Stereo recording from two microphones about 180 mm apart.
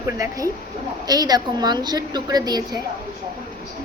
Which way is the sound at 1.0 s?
20° right (ahead or behind).